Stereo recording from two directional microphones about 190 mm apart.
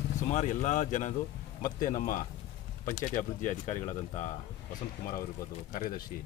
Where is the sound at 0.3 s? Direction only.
40° left (ahead or behind).